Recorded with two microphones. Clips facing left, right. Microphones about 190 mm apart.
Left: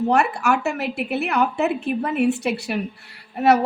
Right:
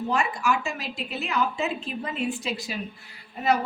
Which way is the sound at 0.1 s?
70° left (ahead or behind).